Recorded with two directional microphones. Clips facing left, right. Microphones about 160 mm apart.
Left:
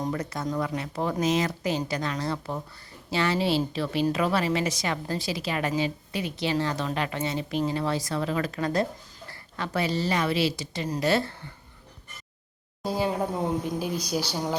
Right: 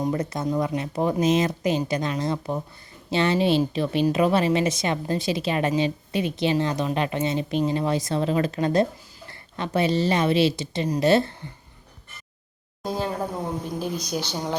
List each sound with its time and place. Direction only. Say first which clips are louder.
0.1 s speech: right 4 dB; 25° right (ahead or behind)
0.4 s speech: right 4 dB; 10° right (ahead or behind)
12.8 s speech: even; 10° left (ahead or behind)